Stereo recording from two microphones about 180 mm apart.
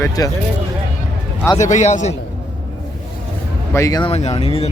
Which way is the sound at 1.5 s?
40° left (ahead or behind).